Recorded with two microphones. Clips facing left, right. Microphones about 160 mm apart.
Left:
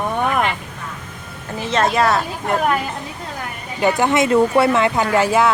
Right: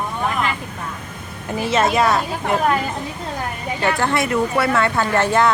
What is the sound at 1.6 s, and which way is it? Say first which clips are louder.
Speech: even; 5° right (ahead or behind).